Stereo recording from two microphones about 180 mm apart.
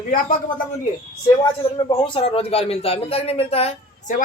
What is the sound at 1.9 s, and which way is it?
Speech, 25° left (ahead or behind).